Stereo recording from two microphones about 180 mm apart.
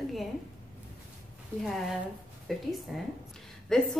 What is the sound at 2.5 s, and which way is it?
A woman's voice, centre (ahead or behind).